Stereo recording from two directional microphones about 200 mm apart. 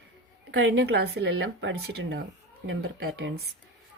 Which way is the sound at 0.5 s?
65° right (ahead or behind).